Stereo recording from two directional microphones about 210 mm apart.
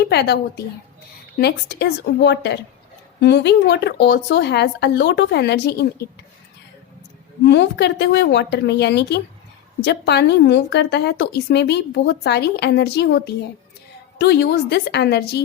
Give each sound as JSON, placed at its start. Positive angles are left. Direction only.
{"t": 0.1, "sound": "a woman's voice", "side_deg": 50}
{"t": 7.4, "sound": "a woman's voice", "side_deg": 55}